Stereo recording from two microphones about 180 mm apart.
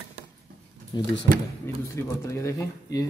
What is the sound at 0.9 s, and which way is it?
Speech, 25° left (ahead or behind).